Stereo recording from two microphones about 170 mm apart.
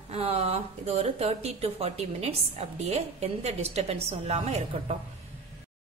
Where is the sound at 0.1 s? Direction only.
40° right (ahead or behind).